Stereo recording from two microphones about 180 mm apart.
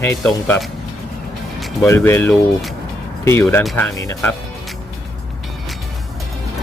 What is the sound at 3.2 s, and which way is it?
Speech, 15° left (ahead or behind).